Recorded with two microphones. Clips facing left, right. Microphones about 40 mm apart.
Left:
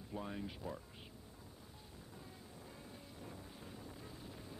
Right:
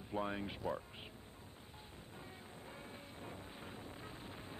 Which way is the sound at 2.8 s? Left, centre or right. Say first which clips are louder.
Right 2 dB; right.